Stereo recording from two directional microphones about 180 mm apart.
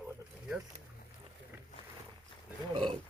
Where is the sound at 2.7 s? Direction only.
25° right (ahead or behind).